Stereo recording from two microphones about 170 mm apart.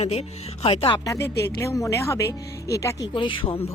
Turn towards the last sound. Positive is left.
turn(degrees=30)  # may be behind; listen again after turning